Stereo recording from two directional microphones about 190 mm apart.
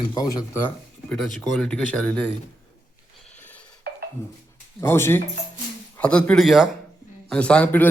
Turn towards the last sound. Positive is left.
turn(degrees=5)  # may be behind; listen again after turning